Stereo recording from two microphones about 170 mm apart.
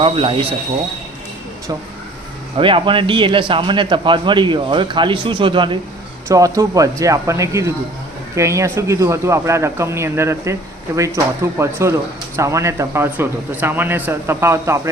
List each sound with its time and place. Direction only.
0.0 s speech: 30° right (ahead or behind)
2.6 s a man's voice: 30° right (ahead or behind)